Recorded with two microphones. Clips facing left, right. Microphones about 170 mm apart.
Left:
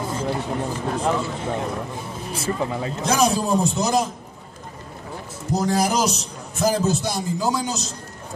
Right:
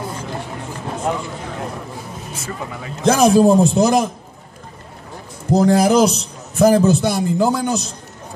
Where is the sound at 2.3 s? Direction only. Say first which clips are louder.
Left 6 dB; 30° left (ahead or behind).